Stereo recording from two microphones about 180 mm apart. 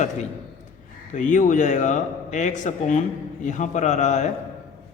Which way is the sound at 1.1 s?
45° left (ahead or behind).